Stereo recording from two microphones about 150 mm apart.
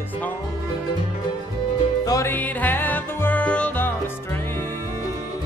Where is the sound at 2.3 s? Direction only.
10° left (ahead or behind).